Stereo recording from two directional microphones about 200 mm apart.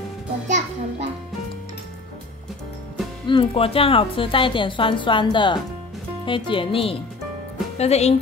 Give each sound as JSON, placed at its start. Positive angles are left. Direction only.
{"t": 0.5, "sound": "music", "side_deg": -35}
{"t": 3.3, "sound": "a woman's voice", "side_deg": 25}